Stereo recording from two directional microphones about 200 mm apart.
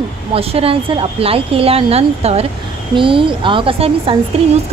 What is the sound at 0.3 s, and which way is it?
A woman's voice, 30° right (ahead or behind).